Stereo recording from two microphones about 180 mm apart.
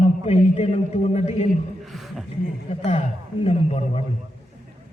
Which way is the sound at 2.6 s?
35° left (ahead or behind).